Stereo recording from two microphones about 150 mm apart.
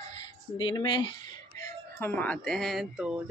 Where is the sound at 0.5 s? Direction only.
35° left (ahead or behind).